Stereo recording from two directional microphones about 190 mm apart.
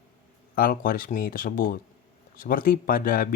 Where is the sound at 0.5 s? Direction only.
50° left (ahead or behind).